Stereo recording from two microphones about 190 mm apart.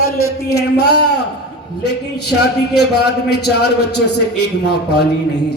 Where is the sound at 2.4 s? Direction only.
60° left (ahead or behind).